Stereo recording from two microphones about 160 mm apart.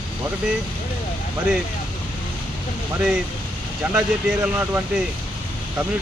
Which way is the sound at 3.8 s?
10° right (ahead or behind).